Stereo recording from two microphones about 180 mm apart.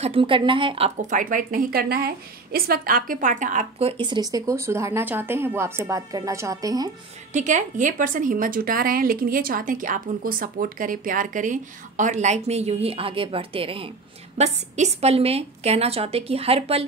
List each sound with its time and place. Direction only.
0.0 s a woman's voice: 30° right (ahead or behind)
4.0 s a woman's voice: 25° right (ahead or behind)
7.3 s a woman's voice: 45° right (ahead or behind)